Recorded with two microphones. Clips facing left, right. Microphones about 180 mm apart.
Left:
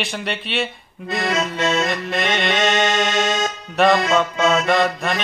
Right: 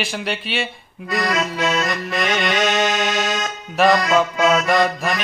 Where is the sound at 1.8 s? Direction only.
Centre (ahead or behind).